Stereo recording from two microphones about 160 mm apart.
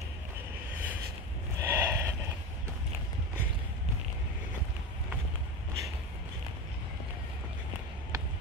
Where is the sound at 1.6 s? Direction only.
15° right (ahead or behind).